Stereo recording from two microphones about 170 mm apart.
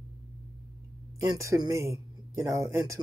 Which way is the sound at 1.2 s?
20° right (ahead or behind).